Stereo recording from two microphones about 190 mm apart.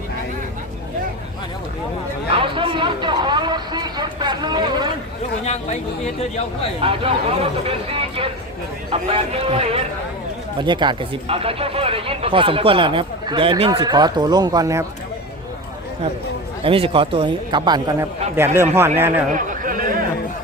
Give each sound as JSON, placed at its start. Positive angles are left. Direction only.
{"t": 2.3, "sound": "a sound", "side_deg": -30}
{"t": 5.5, "sound": "speech", "side_deg": 35}
{"t": 6.8, "sound": "a man's voice", "side_deg": -30}
{"t": 16.6, "sound": "speech", "side_deg": -30}
{"t": 18.3, "sound": "speech", "side_deg": -10}
{"t": 19.3, "sound": "chatter", "side_deg": -45}